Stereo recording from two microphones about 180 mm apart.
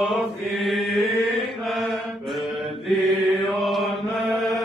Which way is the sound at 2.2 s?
Centre (ahead or behind).